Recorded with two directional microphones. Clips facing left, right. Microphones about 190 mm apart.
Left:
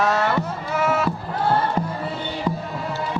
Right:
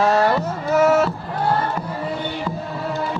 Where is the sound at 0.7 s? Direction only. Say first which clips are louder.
Right 7 dB; 45° right (ahead or behind).